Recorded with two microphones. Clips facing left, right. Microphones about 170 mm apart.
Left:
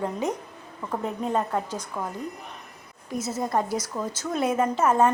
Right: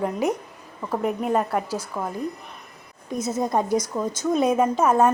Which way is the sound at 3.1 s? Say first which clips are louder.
Right 3 dB; 20° right (ahead or behind).